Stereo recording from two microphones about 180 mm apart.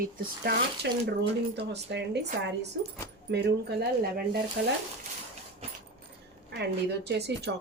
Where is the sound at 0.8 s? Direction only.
70° right (ahead or behind).